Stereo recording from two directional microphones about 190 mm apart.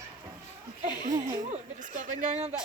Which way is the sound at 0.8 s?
40° right (ahead or behind).